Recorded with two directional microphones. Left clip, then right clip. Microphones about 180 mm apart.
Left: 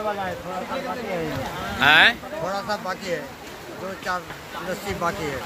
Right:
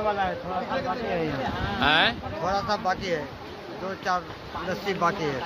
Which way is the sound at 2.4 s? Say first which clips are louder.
Right 3 dB; 20° right (ahead or behind).